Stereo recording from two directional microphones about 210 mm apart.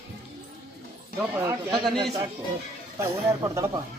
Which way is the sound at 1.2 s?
15° right (ahead or behind).